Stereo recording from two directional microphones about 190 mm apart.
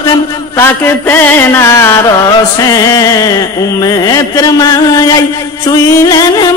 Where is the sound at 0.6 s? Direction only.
10° left (ahead or behind).